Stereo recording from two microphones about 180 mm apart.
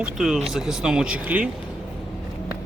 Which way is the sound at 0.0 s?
Centre (ahead or behind).